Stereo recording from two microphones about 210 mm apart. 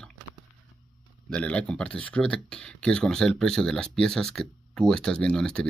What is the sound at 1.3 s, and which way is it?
Speech, 5° left (ahead or behind).